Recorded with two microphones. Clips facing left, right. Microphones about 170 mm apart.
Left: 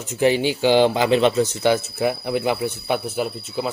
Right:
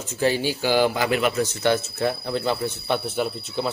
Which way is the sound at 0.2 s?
20° left (ahead or behind).